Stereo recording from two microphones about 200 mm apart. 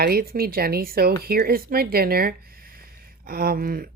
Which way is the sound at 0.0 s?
50° right (ahead or behind).